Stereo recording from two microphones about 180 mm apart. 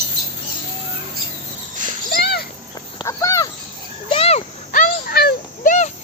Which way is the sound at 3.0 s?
15° left (ahead or behind).